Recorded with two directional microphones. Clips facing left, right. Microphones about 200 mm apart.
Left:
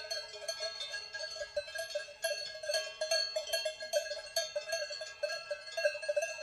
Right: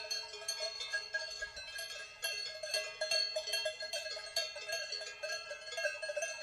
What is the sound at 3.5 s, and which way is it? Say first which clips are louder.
Cowbell: left 5 dB; 50° left (ahead or behind).